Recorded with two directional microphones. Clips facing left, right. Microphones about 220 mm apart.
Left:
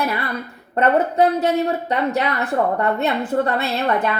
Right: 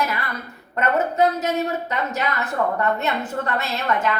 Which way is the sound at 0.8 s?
35° left (ahead or behind).